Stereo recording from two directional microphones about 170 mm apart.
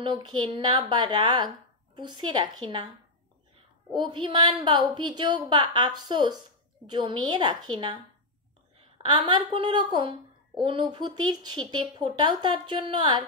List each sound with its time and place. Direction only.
0.0 s speech: 25° right (ahead or behind)
3.9 s speech: 30° right (ahead or behind)